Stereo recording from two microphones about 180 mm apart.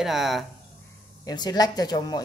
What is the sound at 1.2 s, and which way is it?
Speech, 20° left (ahead or behind).